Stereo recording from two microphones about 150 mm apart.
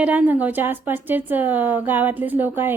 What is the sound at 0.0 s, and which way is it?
A woman's voice, 10° right (ahead or behind).